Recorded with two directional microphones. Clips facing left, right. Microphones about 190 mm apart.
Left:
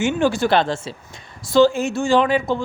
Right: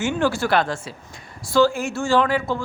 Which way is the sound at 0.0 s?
20° left (ahead or behind).